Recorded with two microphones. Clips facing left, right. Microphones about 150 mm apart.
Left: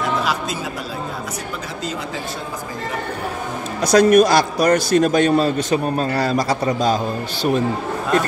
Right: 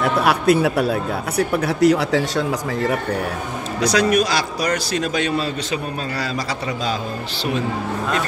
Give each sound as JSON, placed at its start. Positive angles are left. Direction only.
{"t": 0.0, "sound": "speech", "side_deg": -60}
{"t": 3.8, "sound": "a man's voice", "side_deg": 50}